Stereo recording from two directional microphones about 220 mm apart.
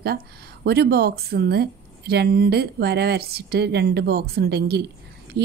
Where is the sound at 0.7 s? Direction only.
45° right (ahead or behind).